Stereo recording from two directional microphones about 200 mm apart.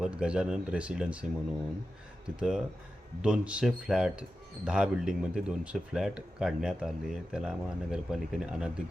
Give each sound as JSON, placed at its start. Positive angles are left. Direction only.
{"t": 0.0, "sound": "speech", "side_deg": -5}